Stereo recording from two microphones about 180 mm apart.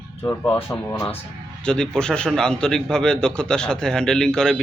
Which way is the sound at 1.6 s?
5° left (ahead or behind).